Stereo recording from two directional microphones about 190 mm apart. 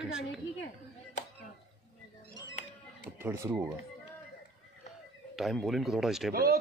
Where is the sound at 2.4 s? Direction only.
75° left (ahead or behind).